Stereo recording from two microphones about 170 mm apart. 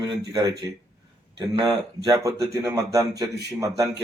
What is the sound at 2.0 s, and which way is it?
Speech, 20° right (ahead or behind).